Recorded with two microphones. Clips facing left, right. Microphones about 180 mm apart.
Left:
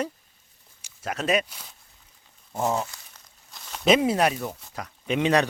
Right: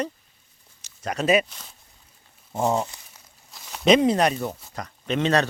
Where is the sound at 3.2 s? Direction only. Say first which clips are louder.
Even; 5° right (ahead or behind).